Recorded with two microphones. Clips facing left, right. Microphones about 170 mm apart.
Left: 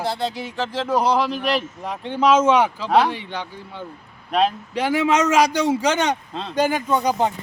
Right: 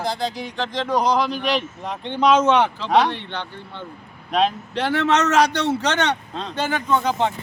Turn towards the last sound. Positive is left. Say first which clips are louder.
# left 1 dB
turn(degrees=10)  # may be behind; listen again after turning